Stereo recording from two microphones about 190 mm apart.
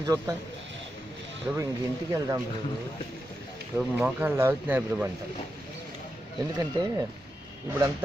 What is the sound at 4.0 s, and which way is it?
A man's voice, 10° right (ahead or behind).